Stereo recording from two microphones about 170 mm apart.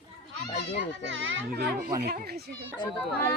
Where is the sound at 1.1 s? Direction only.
80° right.